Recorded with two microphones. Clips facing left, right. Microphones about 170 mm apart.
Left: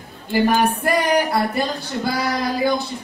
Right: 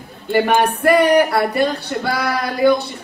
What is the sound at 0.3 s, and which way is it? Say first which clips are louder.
A woman's voice: right 2 dB; 65° right (ahead or behind).